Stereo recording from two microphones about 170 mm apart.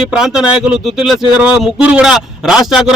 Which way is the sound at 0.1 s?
5° right (ahead or behind).